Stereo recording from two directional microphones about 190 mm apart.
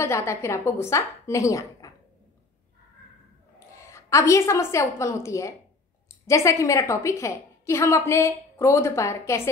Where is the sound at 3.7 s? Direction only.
15° left (ahead or behind).